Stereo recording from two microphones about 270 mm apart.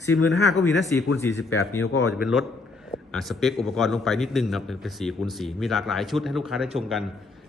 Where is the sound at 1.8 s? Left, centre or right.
Left.